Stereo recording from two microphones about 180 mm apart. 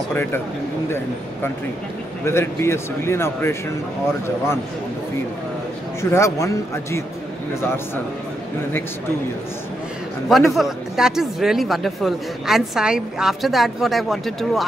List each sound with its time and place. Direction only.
0.1 s speech: 10° left (ahead or behind)
2.2 s speech: 15° left (ahead or behind)
6.0 s speech: 15° left (ahead or behind)
10.2 s speech: centre (ahead or behind)